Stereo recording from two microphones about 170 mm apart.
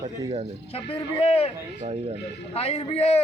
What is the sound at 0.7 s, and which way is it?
Speech, 35° left (ahead or behind).